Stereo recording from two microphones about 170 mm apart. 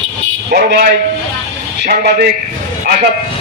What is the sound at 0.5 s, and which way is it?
A man's voice, 65° right (ahead or behind).